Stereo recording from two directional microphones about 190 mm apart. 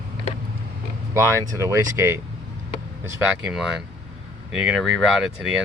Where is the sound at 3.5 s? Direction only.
Centre (ahead or behind).